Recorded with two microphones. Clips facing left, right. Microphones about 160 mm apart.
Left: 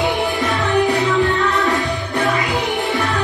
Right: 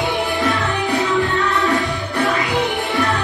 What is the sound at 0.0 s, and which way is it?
Music, centre (ahead or behind).